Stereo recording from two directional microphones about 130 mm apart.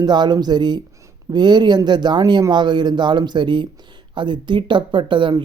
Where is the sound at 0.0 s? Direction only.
35° right (ahead or behind).